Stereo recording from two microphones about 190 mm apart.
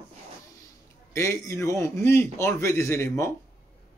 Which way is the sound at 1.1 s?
15° left (ahead or behind).